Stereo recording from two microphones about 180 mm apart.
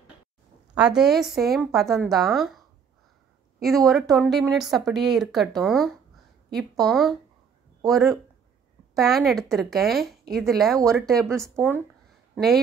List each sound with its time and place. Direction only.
0.7 s speech: 5° right (ahead or behind)
3.6 s speech: centre (ahead or behind)
11.5 s speech: 10° right (ahead or behind)